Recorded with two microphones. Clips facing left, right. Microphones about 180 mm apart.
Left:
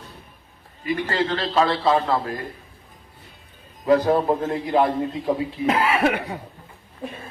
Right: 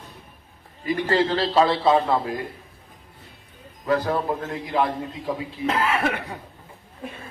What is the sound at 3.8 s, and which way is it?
A man's voice, 20° left (ahead or behind).